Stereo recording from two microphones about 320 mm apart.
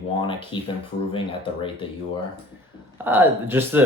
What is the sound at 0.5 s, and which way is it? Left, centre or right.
Speech, centre.